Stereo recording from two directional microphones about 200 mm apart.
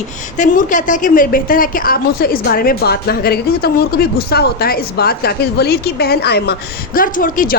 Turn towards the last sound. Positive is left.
turn(degrees=40)  # may be behind; listen again after turning